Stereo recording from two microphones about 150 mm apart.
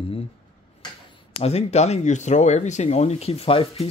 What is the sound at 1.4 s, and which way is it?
Speech, 45° left (ahead or behind).